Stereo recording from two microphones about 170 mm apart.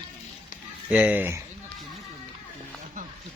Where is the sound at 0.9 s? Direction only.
5° right (ahead or behind).